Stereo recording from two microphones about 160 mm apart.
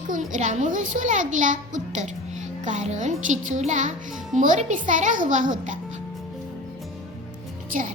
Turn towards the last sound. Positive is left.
turn(degrees=-55)  # may be behind; listen again after turning